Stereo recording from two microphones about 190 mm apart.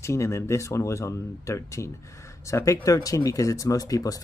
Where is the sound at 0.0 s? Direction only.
15° left (ahead or behind).